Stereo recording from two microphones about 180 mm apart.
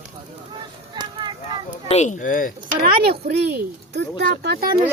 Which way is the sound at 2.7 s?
55° right (ahead or behind).